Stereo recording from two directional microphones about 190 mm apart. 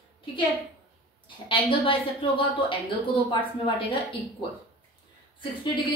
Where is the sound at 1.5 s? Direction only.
25° left (ahead or behind).